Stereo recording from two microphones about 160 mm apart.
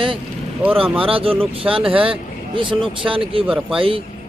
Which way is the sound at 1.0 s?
35° right (ahead or behind).